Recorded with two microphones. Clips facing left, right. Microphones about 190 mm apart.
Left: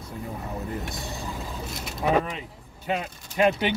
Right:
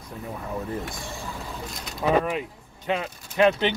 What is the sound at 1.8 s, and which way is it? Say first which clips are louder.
Speech: right 1 dB; 5° left (ahead or behind).